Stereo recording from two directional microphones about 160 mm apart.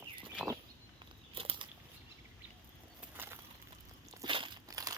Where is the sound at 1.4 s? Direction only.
35° right (ahead or behind).